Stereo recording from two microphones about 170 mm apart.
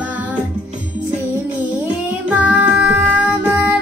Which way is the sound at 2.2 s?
10° right (ahead or behind).